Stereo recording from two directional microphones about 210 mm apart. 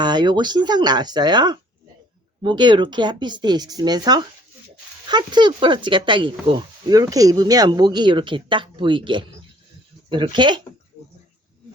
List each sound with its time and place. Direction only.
0.0 s speech: 20° right (ahead or behind)